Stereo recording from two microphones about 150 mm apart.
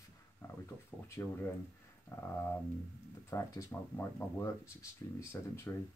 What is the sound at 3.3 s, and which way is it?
Speech, 20° left (ahead or behind).